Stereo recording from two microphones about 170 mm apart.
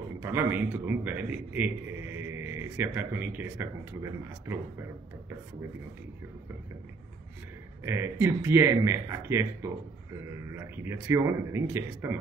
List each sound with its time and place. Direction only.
0.2 s a man's voice: 15° right (ahead or behind)
7.8 s a man's voice: 15° right (ahead or behind)